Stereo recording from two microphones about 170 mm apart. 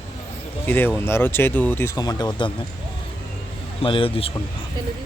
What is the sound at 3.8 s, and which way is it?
Speech, 30° left (ahead or behind).